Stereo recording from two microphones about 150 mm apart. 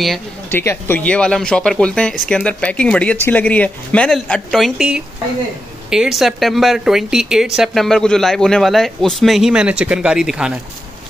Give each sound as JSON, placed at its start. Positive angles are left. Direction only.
{"t": 0.5, "sound": "speech", "side_deg": 15}